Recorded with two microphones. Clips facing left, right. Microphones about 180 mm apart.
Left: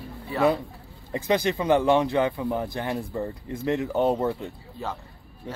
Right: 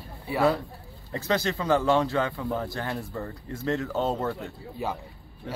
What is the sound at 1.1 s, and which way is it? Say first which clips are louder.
Speech: left 3 dB; 15° left (ahead or behind).